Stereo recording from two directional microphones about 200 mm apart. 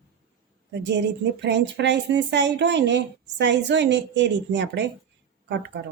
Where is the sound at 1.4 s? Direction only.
60° right (ahead or behind).